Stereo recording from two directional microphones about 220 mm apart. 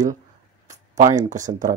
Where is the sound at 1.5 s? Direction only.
35° right (ahead or behind).